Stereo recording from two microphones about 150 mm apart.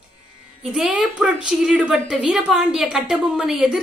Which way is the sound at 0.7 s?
5° right (ahead or behind).